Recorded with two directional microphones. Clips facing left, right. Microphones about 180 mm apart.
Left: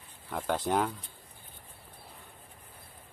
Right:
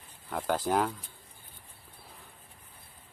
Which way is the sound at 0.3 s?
Centre (ahead or behind).